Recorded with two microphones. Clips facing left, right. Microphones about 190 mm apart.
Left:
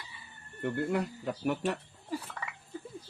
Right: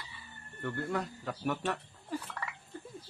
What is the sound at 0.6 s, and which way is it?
Speech, 15° left (ahead or behind).